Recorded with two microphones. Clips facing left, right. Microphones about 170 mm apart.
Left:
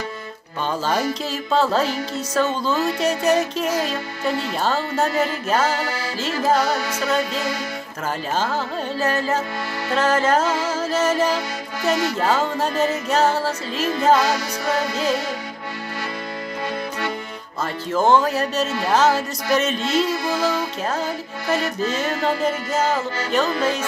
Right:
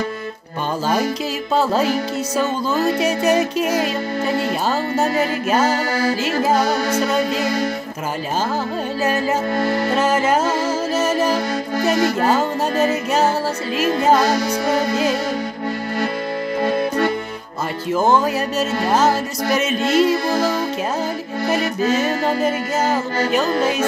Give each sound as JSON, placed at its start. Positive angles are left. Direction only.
{"t": 1.5, "sound": "music", "side_deg": -10}
{"t": 5.7, "sound": "music", "side_deg": -45}
{"t": 6.4, "sound": "music", "side_deg": -15}
{"t": 6.9, "sound": "music", "side_deg": -45}
{"t": 9.0, "sound": "music", "side_deg": -10}
{"t": 11.9, "sound": "music", "side_deg": -45}
{"t": 12.8, "sound": "music", "side_deg": -10}
{"t": 14.1, "sound": "music", "side_deg": -45}
{"t": 16.6, "sound": "music", "side_deg": -50}
{"t": 17.9, "sound": "music", "side_deg": -10}
{"t": 19.8, "sound": "music", "side_deg": -45}